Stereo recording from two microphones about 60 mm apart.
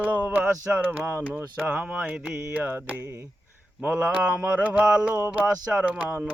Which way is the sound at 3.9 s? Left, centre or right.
Right.